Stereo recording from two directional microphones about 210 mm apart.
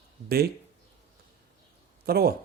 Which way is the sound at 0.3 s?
50° right (ahead or behind).